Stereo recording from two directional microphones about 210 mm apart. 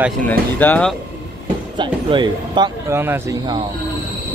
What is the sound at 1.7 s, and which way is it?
Speech, 20° right (ahead or behind).